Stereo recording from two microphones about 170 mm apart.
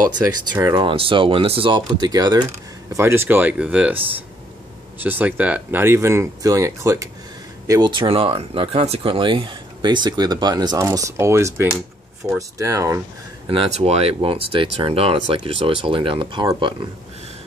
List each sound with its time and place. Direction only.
0.5 s speech: 25° right (ahead or behind); by 4.0 s 5° right (ahead or behind)
5.0 s speech: 10° right (ahead or behind)
13.5 s speech: 35° right (ahead or behind)